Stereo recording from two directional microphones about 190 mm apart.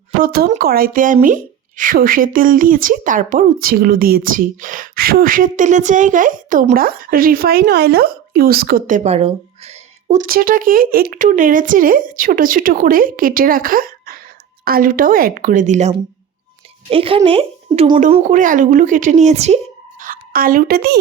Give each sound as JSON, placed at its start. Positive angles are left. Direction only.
{"t": 0.2, "sound": "a woman's voice", "side_deg": -50}
{"t": 18.3, "sound": "speech", "side_deg": -45}
{"t": 20.0, "sound": "a woman's voice", "side_deg": -50}